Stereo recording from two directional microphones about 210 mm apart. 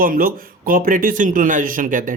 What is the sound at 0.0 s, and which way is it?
Speech, 40° right (ahead or behind).